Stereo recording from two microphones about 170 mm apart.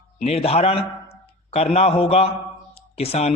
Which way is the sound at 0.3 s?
35° left (ahead or behind).